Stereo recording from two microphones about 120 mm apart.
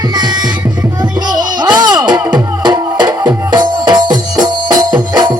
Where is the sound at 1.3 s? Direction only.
35° right (ahead or behind).